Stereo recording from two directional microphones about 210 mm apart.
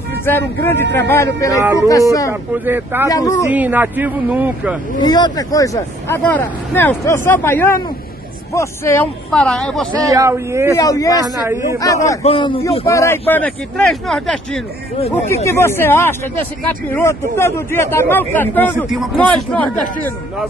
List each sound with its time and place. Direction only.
0.2 s speech: 10° left (ahead or behind)
2.6 s speech: 10° right (ahead or behind)
3.1 s speech: 15° left (ahead or behind)
3.4 s speech: 10° right (ahead or behind)
5.0 s speech: 20° left (ahead or behind); by 9.8 s centre (ahead or behind)
10.0 s speech: 15° right (ahead or behind)
10.8 s speech: 15° left (ahead or behind)
11.2 s speech: 15° right (ahead or behind)
11.8 s speech: 15° left (ahead or behind)
12.2 s a man's voice: 25° left (ahead or behind)
12.8 s speech: 15° left (ahead or behind)